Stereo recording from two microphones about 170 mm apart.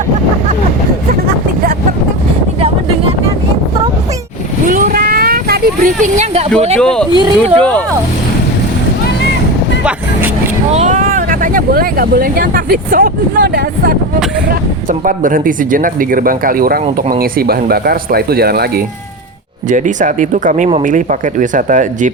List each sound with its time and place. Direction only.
4.7 s vehicle: 55° right (ahead or behind)
6.7 s speech: 5° left (ahead or behind)
7.1 s speech: 30° right (ahead or behind)
10.8 s speech: 45° right (ahead or behind); by 18.7 s 65° right (ahead or behind)
19.7 s speech: 50° right (ahead or behind)